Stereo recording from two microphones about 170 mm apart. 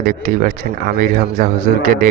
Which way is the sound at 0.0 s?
55° right (ahead or behind).